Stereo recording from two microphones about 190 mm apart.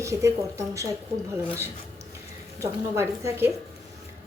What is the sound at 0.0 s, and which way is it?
Speech, 15° right (ahead or behind).